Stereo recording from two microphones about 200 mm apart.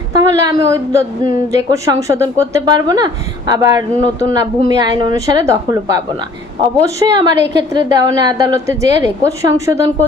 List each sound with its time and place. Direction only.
0.1 s a woman's voice: 20° right (ahead or behind)